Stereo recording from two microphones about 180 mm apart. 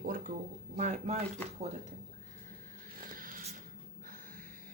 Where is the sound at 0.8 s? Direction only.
40° right (ahead or behind).